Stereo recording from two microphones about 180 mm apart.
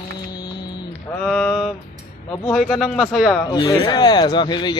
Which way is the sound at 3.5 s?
25° left (ahead or behind).